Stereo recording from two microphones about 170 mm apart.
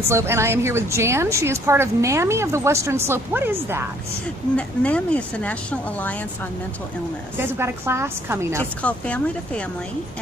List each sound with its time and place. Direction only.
0.1 s a woman's voice: 15° right (ahead or behind)
4.6 s speech: 5° left (ahead or behind)
7.3 s a woman's voice: 15° right (ahead or behind)
8.8 s speech: 10° left (ahead or behind)